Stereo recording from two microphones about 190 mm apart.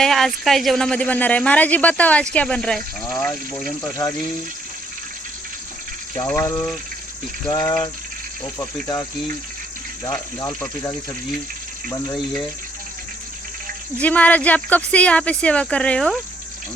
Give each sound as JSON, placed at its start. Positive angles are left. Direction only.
{"t": 0.0, "sound": "speech", "side_deg": 0}
{"t": 6.1, "sound": "speech", "side_deg": 15}
{"t": 10.4, "sound": "speech", "side_deg": 15}
{"t": 14.0, "sound": "speech", "side_deg": 10}